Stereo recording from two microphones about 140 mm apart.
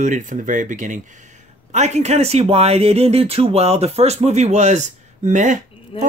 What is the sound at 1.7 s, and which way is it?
Speech, 55° right (ahead or behind).